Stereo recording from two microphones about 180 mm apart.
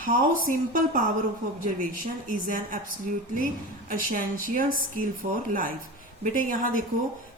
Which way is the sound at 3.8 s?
50° right (ahead or behind).